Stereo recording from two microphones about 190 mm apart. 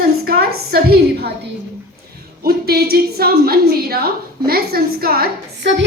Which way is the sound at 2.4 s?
55° right (ahead or behind).